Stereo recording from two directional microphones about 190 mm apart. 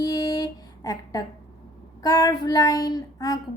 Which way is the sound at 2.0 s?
20° left (ahead or behind).